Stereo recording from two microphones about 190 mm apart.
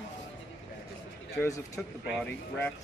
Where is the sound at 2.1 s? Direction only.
5° left (ahead or behind).